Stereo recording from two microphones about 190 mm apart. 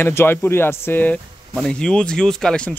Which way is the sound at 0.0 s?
10° left (ahead or behind).